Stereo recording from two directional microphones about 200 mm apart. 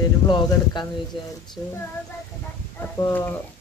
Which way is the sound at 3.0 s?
10° left (ahead or behind).